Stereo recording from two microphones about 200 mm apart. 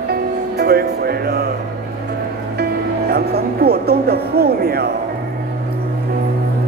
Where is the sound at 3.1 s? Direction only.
50° right (ahead or behind).